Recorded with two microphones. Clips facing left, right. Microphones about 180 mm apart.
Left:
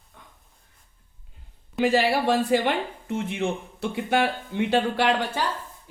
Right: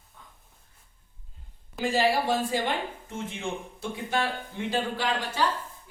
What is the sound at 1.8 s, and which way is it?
Speech, 65° left (ahead or behind).